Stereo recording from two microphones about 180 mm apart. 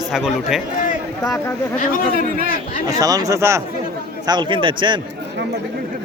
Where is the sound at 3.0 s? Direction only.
20° right (ahead or behind).